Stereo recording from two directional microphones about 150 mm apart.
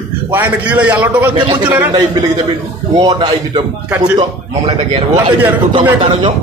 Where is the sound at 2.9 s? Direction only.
30° right (ahead or behind).